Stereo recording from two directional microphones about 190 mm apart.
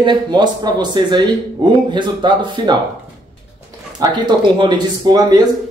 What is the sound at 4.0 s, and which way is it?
A man's voice, 25° right (ahead or behind).